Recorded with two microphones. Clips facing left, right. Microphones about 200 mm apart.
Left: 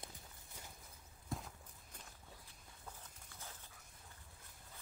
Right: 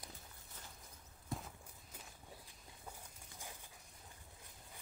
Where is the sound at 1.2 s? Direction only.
Centre (ahead or behind).